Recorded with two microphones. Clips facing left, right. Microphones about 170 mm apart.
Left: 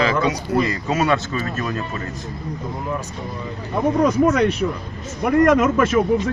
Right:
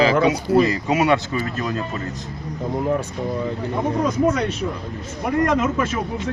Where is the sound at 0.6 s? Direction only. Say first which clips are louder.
Right 2 dB; 20° right (ahead or behind).